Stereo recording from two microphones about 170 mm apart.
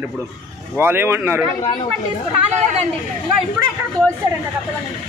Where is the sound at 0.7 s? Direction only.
10° right (ahead or behind).